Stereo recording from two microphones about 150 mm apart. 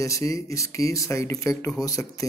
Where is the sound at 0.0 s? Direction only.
20° left (ahead or behind).